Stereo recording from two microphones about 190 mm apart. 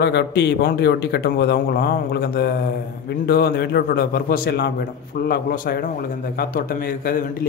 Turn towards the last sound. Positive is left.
turn(degrees=50)  # may be behind; listen again after turning